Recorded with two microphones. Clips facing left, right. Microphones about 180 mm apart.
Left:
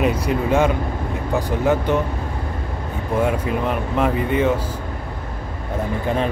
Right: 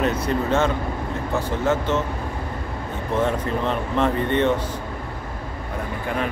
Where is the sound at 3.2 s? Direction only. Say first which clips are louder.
Left 2 dB; 10° left (ahead or behind).